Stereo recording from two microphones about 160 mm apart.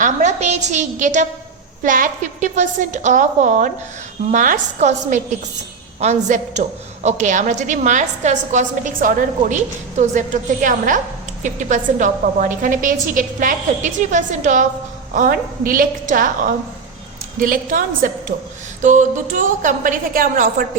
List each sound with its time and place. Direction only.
0.0 s a woman's voice: 45° right (ahead or behind)
17.4 s a woman's voice: 60° right (ahead or behind)